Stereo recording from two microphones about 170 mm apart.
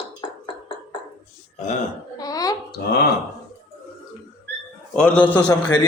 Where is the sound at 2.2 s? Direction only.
20° left (ahead or behind).